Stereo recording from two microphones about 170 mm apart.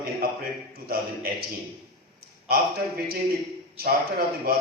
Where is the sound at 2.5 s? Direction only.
65° right (ahead or behind).